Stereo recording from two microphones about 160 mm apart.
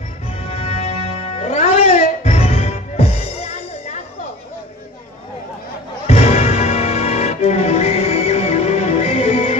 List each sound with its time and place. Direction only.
0.4 s music: 40° left (ahead or behind)
6.0 s music: 40° left (ahead or behind)